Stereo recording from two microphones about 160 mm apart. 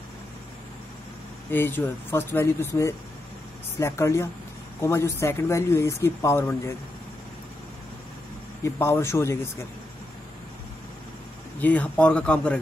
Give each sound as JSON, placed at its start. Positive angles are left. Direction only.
{"t": 1.5, "sound": "speech", "side_deg": 15}
{"t": 8.6, "sound": "speech", "side_deg": 15}
{"t": 11.6, "sound": "speech", "side_deg": 10}